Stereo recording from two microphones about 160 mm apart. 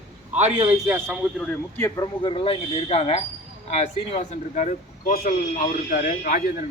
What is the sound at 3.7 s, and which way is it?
Speech, 50° left (ahead or behind).